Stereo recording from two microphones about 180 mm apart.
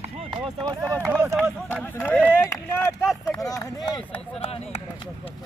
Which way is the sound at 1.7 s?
10° left (ahead or behind).